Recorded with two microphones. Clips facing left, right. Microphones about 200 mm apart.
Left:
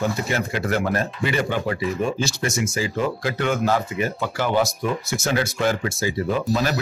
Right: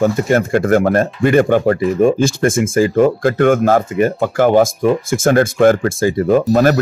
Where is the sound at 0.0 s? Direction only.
50° right (ahead or behind).